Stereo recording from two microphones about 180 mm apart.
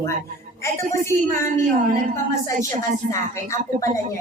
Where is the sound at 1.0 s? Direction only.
15° left (ahead or behind).